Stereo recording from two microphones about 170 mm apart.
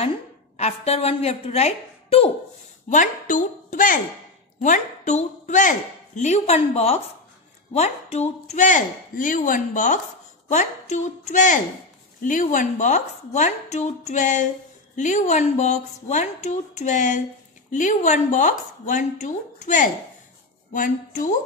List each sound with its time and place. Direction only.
0.6 s a woman's voice: 40° left (ahead or behind)
2.9 s a woman's voice: 50° left (ahead or behind)